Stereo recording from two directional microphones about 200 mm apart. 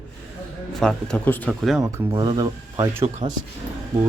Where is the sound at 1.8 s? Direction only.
20° right (ahead or behind).